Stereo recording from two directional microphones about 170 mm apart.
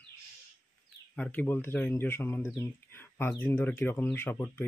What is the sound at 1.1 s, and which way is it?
Speech, 10° left (ahead or behind).